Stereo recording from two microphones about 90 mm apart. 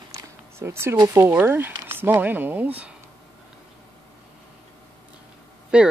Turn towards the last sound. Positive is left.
turn(degrees=-10)  # may be behind; listen again after turning